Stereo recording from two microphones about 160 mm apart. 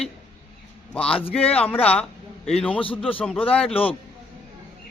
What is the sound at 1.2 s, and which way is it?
Speech, 35° left (ahead or behind).